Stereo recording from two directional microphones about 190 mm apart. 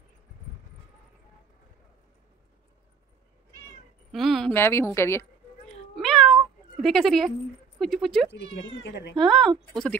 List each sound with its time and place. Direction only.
4.1 s a woman's voice: centre (ahead or behind)
5.9 s cat: centre (ahead or behind)
7.8 s speech: centre (ahead or behind)
8.3 s speech: 65° left (ahead or behind)
9.2 s speech: centre (ahead or behind)